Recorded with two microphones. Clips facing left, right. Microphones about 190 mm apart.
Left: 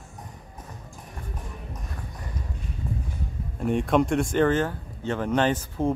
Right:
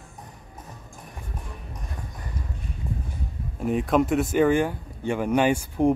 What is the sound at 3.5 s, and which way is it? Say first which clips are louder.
Speech: even; centre (ahead or behind).